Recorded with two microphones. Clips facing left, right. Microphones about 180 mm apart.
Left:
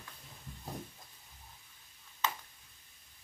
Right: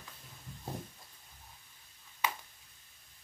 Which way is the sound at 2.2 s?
10° right (ahead or behind).